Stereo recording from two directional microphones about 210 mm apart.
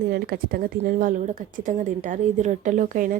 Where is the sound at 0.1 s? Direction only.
45° right (ahead or behind).